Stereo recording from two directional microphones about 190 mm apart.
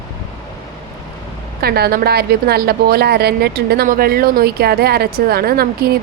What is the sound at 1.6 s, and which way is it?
A woman's voice, 55° right (ahead or behind).